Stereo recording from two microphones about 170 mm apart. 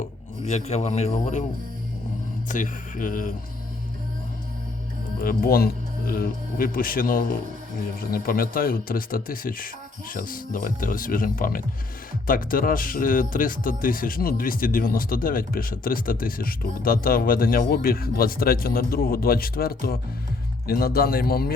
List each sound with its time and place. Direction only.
0.0 s speech: 40° left (ahead or behind)
2.5 s speech: 50° left (ahead or behind)
5.2 s speech: 60° left (ahead or behind)